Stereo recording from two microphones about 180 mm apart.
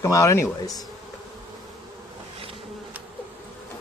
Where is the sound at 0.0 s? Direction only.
15° left (ahead or behind).